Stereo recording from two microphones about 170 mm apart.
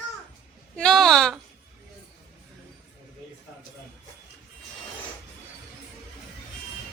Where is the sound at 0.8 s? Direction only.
5° left (ahead or behind).